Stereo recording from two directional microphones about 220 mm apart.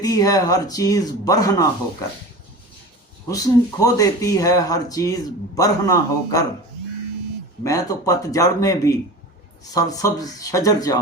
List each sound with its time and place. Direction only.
0.0 s speech: 15° left (ahead or behind)
3.2 s speech: 15° left (ahead or behind)
7.6 s speech: 15° left (ahead or behind)